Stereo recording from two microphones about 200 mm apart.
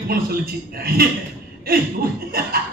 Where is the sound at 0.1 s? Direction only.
50° right (ahead or behind).